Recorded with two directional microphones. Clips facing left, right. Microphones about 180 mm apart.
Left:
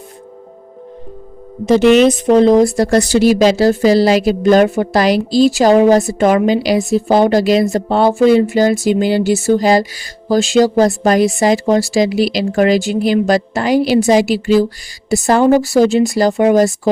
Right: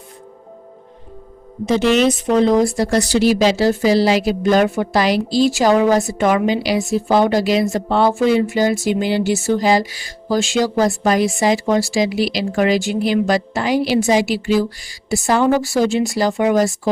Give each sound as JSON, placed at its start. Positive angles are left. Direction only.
{"t": 2.0, "sound": "a woman's voice", "side_deg": 35}
{"t": 2.9, "sound": "a woman's voice", "side_deg": 50}